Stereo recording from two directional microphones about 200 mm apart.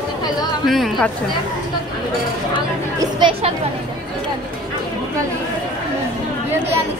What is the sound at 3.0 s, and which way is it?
Speech, 25° right (ahead or behind).